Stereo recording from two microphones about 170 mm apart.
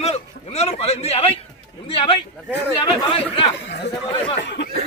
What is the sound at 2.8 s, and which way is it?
Speech, 30° left (ahead or behind).